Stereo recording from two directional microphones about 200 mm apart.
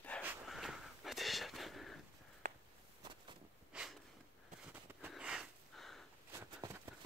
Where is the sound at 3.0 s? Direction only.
25° right (ahead or behind).